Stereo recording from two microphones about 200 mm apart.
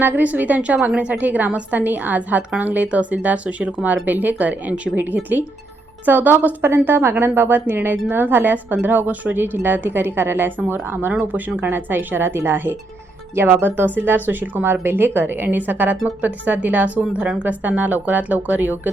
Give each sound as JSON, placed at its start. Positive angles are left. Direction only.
{"t": 0.0, "sound": "a woman's voice", "side_deg": -10}